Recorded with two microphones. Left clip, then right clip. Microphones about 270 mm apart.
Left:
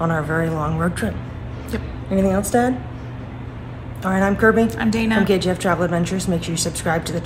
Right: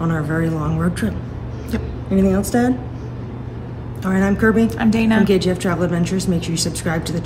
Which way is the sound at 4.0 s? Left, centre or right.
Centre.